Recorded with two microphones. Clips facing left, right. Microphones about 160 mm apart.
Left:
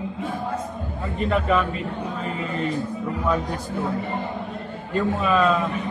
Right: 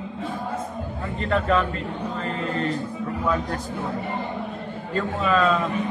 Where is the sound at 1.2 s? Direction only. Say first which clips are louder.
Left 1 dB; 10° left (ahead or behind).